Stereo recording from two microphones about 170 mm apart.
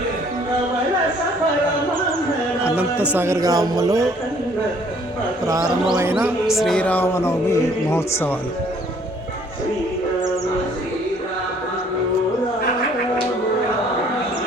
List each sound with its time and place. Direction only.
2.6 s speech: 10° right (ahead or behind)
6.0 s speech: 10° right (ahead or behind)
6.6 s speech: 5° left (ahead or behind)